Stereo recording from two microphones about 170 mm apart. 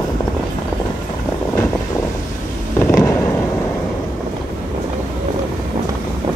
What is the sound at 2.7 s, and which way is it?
Fireworks, 15° left (ahead or behind).